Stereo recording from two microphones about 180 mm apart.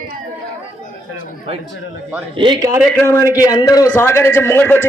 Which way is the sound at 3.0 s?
15° left (ahead or behind).